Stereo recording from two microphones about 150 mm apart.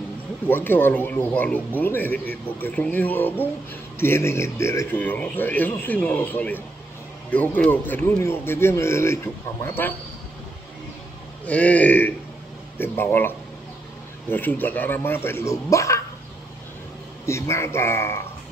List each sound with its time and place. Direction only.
0.5 s speech: 15° left (ahead or behind)
11.4 s speech: 10° left (ahead or behind)
14.3 s speech: 10° left (ahead or behind)
17.3 s speech: 20° left (ahead or behind)